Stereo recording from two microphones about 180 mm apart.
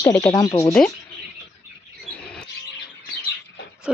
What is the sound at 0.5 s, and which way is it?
Speech, 25° left (ahead or behind).